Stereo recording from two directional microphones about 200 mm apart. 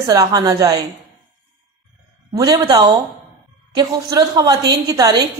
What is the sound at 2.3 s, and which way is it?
A woman's voice, 20° right (ahead or behind).